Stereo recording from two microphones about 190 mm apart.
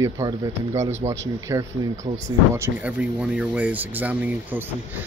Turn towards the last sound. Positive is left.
turn(degrees=-10)  # may be behind; listen again after turning